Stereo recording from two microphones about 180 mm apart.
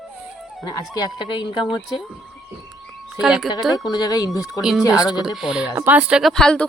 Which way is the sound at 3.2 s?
5° right (ahead or behind).